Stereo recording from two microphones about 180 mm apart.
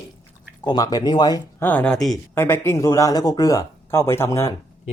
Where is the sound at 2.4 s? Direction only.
10° left (ahead or behind).